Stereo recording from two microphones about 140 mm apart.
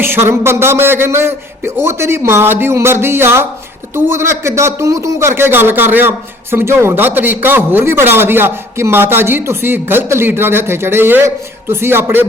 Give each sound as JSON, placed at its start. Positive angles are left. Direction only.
{"t": 0.0, "sound": "a man's voice", "side_deg": -15}